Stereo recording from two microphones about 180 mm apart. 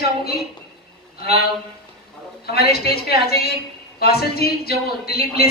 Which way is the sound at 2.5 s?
60° left (ahead or behind).